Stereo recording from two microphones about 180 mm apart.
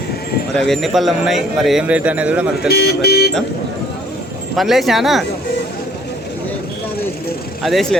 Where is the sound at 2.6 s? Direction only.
60° left (ahead or behind).